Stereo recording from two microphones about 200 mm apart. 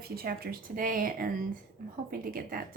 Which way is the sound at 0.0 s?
50° right (ahead or behind).